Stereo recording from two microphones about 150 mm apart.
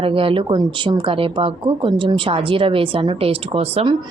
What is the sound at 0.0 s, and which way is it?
Speech, 35° right (ahead or behind).